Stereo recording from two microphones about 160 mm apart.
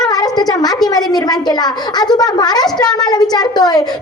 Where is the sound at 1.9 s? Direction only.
25° left (ahead or behind).